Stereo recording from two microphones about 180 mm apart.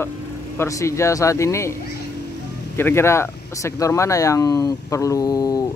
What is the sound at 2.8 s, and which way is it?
Speech, 15° left (ahead or behind).